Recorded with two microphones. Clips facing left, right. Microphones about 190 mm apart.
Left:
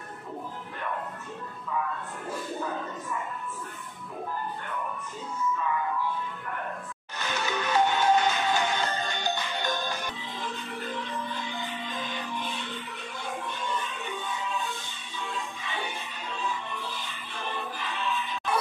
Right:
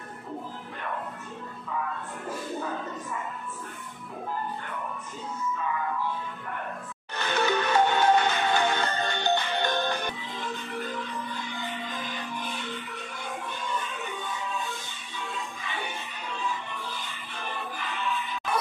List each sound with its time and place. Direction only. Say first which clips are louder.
7.2 s music: right 5 dB; 60° right (ahead or behind)